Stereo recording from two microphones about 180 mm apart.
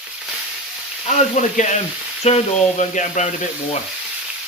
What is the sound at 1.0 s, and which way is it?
Speech, 40° left (ahead or behind).